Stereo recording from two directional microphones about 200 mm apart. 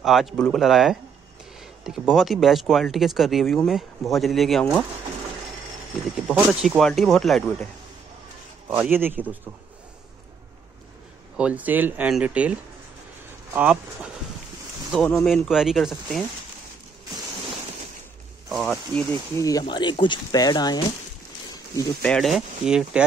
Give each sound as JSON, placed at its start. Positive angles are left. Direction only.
{"t": 0.0, "sound": "speech", "side_deg": 0}
{"t": 6.1, "sound": "speech", "side_deg": -5}
{"t": 8.6, "sound": "speech", "side_deg": -10}
{"t": 11.3, "sound": "speech", "side_deg": -5}
{"t": 18.5, "sound": "speech", "side_deg": 0}
{"t": 22.0, "sound": "speech", "side_deg": 0}